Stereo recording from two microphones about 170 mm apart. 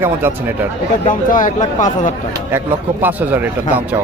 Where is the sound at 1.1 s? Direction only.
50° left (ahead or behind).